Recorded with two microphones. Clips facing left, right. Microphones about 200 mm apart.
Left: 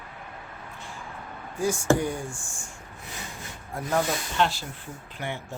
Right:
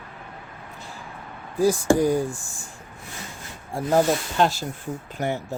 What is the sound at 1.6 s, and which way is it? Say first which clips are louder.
Speech: right 5 dB; 35° right (ahead or behind).